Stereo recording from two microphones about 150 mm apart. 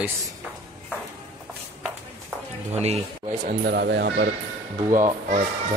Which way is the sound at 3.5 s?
85° right.